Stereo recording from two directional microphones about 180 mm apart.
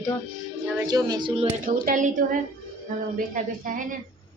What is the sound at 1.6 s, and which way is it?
Speech, 50° right (ahead or behind).